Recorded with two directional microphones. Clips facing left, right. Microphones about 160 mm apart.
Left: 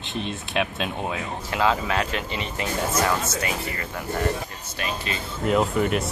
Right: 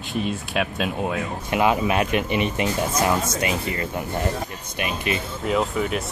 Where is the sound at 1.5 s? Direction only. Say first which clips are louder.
Right 3 dB; 20° right (ahead or behind).